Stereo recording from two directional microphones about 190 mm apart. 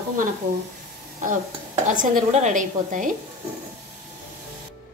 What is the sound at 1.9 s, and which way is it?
A woman's voice, 40° right (ahead or behind).